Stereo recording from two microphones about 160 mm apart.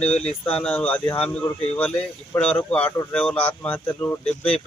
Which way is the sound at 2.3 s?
10° left (ahead or behind).